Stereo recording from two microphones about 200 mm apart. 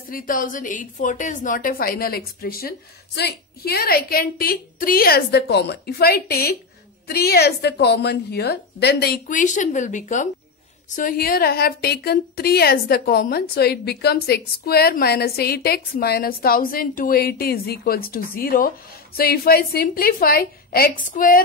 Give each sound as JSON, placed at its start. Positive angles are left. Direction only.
{"t": 0.1, "sound": "a woman's voice", "side_deg": 45}